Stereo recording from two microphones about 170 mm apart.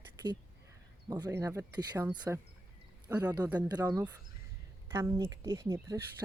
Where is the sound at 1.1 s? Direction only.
20° right (ahead or behind).